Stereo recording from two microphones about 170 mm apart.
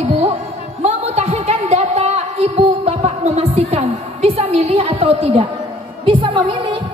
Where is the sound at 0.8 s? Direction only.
40° right (ahead or behind).